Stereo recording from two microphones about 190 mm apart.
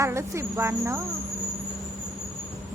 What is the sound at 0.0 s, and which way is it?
Speech, 15° right (ahead or behind).